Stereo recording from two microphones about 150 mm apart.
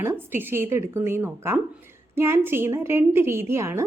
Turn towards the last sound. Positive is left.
turn(degrees=-15)  # may be behind; listen again after turning